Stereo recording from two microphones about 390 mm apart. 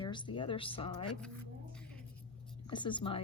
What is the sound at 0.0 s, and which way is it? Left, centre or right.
Speech, centre.